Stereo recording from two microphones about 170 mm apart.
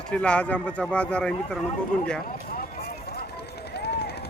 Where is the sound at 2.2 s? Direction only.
60° left (ahead or behind).